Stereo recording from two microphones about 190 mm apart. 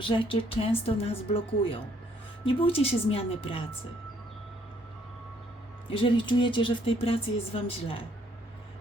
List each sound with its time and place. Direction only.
0.0 s speech: 25° left (ahead or behind)
5.9 s speech: 25° left (ahead or behind)